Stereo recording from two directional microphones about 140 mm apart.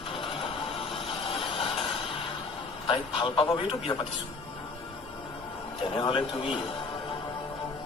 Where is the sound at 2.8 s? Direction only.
40° left (ahead or behind).